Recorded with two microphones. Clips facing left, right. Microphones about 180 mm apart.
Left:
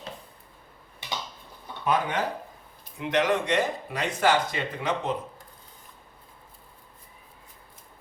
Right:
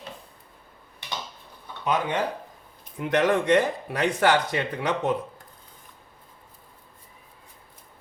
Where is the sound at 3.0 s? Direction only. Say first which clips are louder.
Right 2 dB; 50° right (ahead or behind).